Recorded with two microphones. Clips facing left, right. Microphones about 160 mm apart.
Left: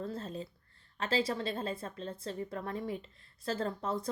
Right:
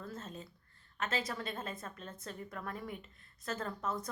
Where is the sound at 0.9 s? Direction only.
30° left (ahead or behind).